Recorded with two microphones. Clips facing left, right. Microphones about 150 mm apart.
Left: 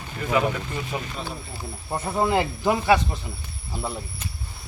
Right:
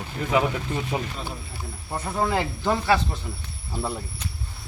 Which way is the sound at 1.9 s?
15° left (ahead or behind).